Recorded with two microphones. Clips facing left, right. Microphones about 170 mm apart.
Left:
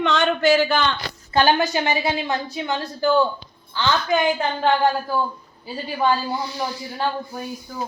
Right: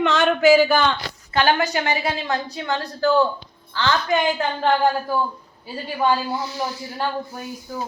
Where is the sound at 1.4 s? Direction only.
20° left (ahead or behind).